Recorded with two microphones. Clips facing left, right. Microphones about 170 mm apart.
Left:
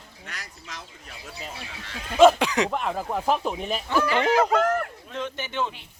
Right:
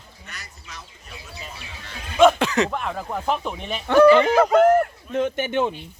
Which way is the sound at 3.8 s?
65° right (ahead or behind).